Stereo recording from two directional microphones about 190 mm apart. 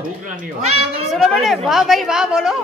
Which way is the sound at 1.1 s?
Centre (ahead or behind).